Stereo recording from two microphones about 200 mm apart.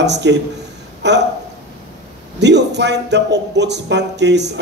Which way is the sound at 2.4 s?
60° right (ahead or behind).